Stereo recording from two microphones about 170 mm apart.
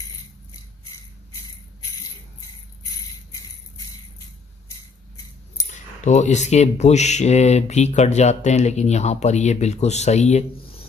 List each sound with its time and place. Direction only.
2.8 s jingle bell: 20° left (ahead or behind)
5.7 s speech: 45° left (ahead or behind)